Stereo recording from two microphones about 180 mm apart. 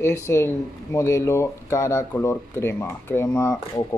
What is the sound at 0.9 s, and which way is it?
Speech, 15° left (ahead or behind).